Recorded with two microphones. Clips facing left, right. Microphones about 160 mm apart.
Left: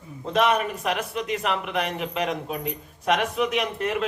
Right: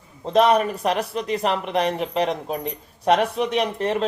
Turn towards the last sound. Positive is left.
turn(degrees=-35)  # may be behind; listen again after turning